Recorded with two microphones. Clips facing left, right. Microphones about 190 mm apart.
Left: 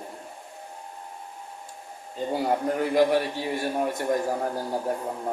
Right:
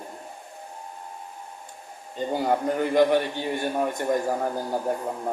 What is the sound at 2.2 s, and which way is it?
A man's voice, 5° left (ahead or behind).